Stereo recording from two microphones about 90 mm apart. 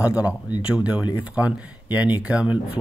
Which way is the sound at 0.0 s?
15° right (ahead or behind).